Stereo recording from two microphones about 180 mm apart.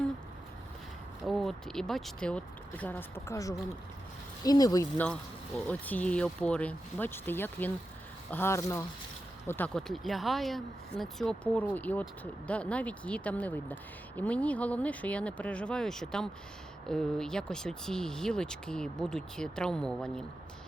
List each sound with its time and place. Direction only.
1.2 s speech: centre (ahead or behind); by 4.9 s 20° left (ahead or behind)
4.9 s speech: 10° left (ahead or behind)